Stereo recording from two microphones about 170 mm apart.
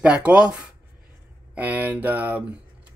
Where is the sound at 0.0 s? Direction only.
5° right (ahead or behind).